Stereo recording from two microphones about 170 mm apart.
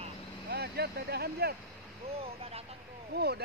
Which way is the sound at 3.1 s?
70° right (ahead or behind).